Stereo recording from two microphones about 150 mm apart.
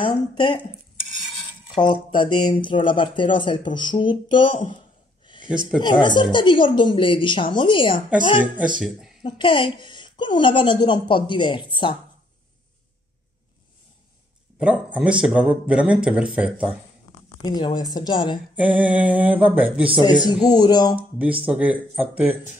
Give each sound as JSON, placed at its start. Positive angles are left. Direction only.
{"t": 0.0, "sound": "speech", "side_deg": 35}
{"t": 1.8, "sound": "speech", "side_deg": 35}
{"t": 5.2, "sound": "a sound", "side_deg": 30}
{"t": 5.8, "sound": "speech", "side_deg": 30}
{"t": 9.2, "sound": "speech", "side_deg": 35}
{"t": 14.6, "sound": "speech", "side_deg": -10}
{"t": 17.4, "sound": "speech", "side_deg": 30}
{"t": 18.6, "sound": "speech", "side_deg": -10}
{"t": 20.2, "sound": "speech", "side_deg": 25}
{"t": 20.9, "sound": "speech", "side_deg": -10}